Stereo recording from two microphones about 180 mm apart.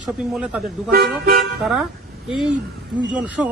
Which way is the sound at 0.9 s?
55° right (ahead or behind).